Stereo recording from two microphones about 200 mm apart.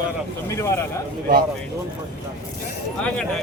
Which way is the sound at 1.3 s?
45° right (ahead or behind).